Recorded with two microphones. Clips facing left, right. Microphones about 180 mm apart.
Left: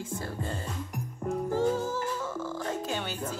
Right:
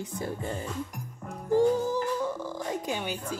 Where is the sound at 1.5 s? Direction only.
15° right (ahead or behind).